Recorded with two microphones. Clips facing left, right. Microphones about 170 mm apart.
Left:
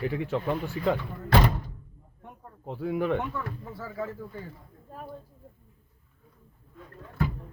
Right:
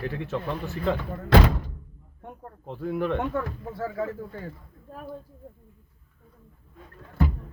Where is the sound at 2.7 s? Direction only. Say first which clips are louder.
Even; 10° left (ahead or behind).